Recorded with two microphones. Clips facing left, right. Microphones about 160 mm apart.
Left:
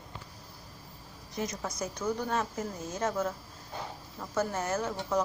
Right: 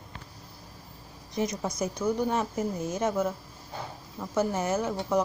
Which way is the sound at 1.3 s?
20° right (ahead or behind).